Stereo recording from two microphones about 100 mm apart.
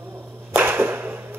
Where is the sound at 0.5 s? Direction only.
20° right (ahead or behind).